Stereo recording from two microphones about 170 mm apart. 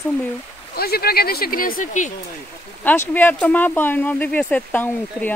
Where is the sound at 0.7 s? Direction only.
65° left (ahead or behind); by 2.1 s 50° left (ahead or behind).